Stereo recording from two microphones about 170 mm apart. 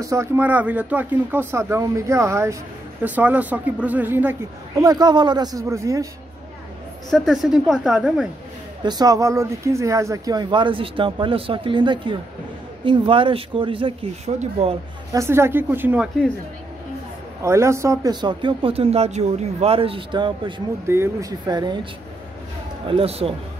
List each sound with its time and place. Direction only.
0.0 s speech: 15° right (ahead or behind)
4.8 s speech: 25° right (ahead or behind)
7.1 s a woman's voice: centre (ahead or behind)
8.8 s speech: 25° right (ahead or behind); by 14.8 s 40° right (ahead or behind)
15.1 s speech: 15° right (ahead or behind)
17.4 s speech: 15° right (ahead or behind)
20.8 s speech: 15° right (ahead or behind)
22.8 s speech: 35° right (ahead or behind)